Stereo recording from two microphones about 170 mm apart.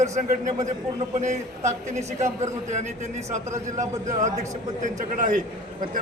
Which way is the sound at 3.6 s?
45° right (ahead or behind).